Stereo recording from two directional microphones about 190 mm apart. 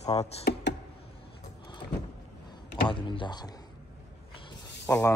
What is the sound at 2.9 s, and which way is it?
Speech, 25° left (ahead or behind).